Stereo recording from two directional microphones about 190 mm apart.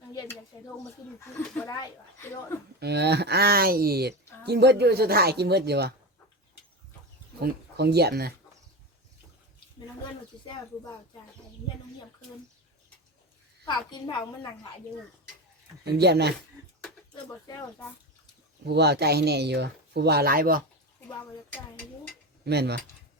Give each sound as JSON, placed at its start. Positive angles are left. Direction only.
{"t": 0.1, "sound": "a sound", "side_deg": 20}
{"t": 1.2, "sound": "speech", "side_deg": 10}
{"t": 2.8, "sound": "speech", "side_deg": -60}
{"t": 7.3, "sound": "speech", "side_deg": -55}
{"t": 13.7, "sound": "a woman's voice", "side_deg": 20}
{"t": 15.8, "sound": "speech", "side_deg": -60}
{"t": 18.6, "sound": "speech", "side_deg": -60}
{"t": 22.4, "sound": "speech", "side_deg": -60}